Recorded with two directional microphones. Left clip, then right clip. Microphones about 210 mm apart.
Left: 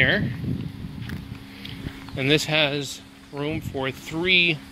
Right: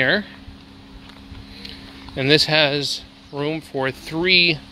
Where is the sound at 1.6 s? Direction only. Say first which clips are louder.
Even; 20° right (ahead or behind).